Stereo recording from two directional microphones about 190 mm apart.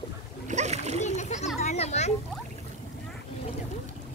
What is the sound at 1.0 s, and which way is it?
Children playing, 35° left (ahead or behind).